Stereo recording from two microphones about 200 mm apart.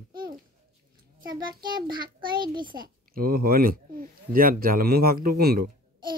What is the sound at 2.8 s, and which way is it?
Speech, 45° right (ahead or behind).